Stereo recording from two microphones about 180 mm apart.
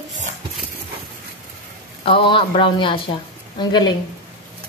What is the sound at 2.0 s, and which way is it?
A woman's voice, 30° left (ahead or behind).